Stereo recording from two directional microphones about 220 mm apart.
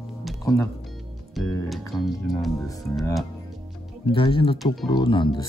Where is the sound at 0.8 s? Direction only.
Centre (ahead or behind).